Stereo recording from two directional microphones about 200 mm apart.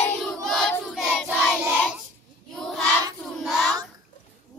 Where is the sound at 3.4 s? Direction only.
Centre (ahead or behind).